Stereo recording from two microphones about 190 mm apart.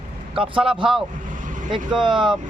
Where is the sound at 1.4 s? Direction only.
40° right (ahead or behind).